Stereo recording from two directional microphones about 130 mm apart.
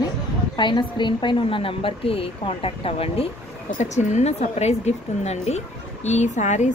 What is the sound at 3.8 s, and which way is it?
A woman's voice, 65° left (ahead or behind).